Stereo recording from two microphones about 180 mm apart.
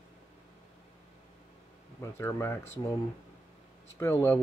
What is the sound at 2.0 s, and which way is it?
Speech, 15° left (ahead or behind).